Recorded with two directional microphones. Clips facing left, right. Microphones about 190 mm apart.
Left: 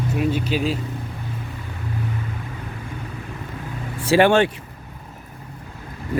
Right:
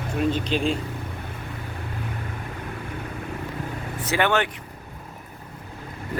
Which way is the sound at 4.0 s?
30° left (ahead or behind).